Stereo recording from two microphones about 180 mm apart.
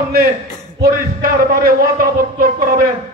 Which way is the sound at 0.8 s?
55° right (ahead or behind).